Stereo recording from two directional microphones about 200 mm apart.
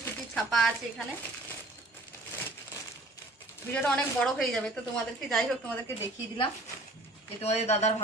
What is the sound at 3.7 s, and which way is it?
A woman's voice, 5° left (ahead or behind).